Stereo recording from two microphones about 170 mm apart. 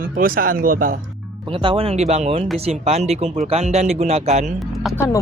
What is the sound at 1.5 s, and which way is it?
Speech, 30° right (ahead or behind).